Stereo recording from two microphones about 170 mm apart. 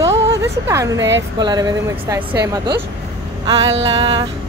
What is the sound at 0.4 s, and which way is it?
A woman's voice, 20° right (ahead or behind).